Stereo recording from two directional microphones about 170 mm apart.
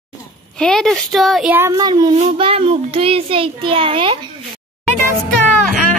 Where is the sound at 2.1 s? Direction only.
35° right (ahead or behind).